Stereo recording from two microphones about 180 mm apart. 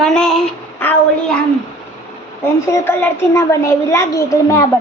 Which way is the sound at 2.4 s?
15° left (ahead or behind).